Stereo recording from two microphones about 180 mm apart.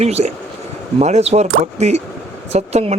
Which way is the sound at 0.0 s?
35° right (ahead or behind).